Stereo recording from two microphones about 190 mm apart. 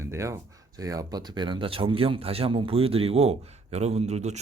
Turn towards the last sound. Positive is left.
turn(degrees=-35)  # may be behind; listen again after turning